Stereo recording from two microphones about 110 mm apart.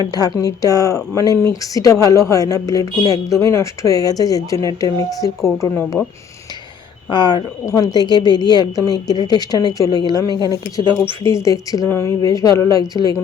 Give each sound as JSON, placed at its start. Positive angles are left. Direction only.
{"t": 0.0, "sound": "speech", "side_deg": 40}
{"t": 5.4, "sound": "speech", "side_deg": 0}
{"t": 6.0, "sound": "speech", "side_deg": 15}
{"t": 7.1, "sound": "speech", "side_deg": 40}
{"t": 11.4, "sound": "speech", "side_deg": 30}